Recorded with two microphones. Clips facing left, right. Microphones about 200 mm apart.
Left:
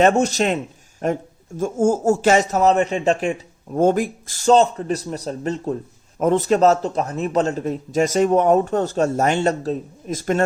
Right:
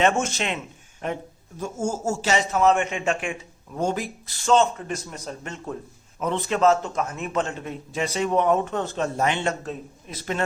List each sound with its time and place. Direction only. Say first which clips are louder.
0.0 s a man's voice: left 6 dB; 40° left (ahead or behind)
3.8 s a man's voice: left 8 dB; 50° left (ahead or behind)
6.1 s a man's voice: left 8 dB; 45° left (ahead or behind)